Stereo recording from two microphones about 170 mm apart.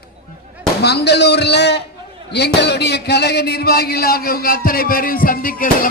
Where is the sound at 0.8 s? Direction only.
75° left (ahead or behind).